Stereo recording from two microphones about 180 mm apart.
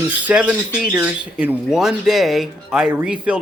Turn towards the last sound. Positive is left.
turn(degrees=-5)  # may be behind; listen again after turning